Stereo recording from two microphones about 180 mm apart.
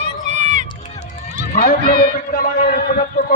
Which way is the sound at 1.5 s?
55° left (ahead or behind).